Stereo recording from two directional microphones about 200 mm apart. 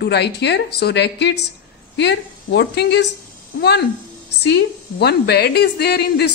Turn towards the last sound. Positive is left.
turn(degrees=55)  # may be behind; listen again after turning